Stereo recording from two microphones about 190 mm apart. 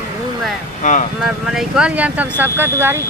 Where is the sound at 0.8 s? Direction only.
40° left (ahead or behind).